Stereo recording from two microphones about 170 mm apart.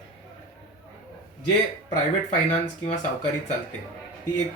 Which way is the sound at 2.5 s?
40° left (ahead or behind).